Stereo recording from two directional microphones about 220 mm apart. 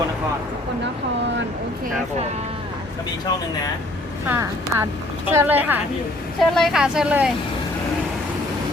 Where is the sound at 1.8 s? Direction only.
30° right (ahead or behind).